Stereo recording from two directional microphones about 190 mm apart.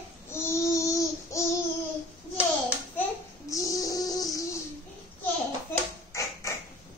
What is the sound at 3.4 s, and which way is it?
Child singing, 15° left (ahead or behind).